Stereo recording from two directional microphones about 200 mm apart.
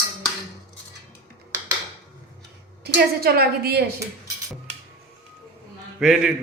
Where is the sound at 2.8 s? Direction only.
50° right (ahead or behind).